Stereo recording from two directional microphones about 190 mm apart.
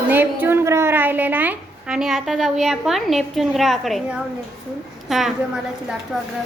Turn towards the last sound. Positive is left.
turn(degrees=-5)  # may be behind; listen again after turning